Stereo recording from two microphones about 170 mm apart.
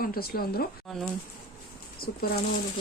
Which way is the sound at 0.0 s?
60° left (ahead or behind).